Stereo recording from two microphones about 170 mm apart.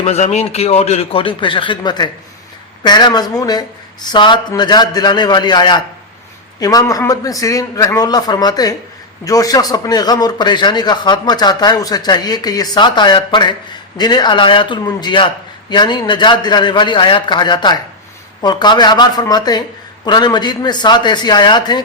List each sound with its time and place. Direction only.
0.0 s a man's voice: 40° left (ahead or behind); by 21.8 s 25° left (ahead or behind)